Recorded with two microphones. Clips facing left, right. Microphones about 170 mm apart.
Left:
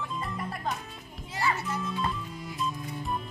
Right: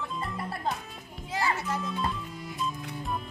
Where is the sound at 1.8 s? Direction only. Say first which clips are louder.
Even; centre (ahead or behind).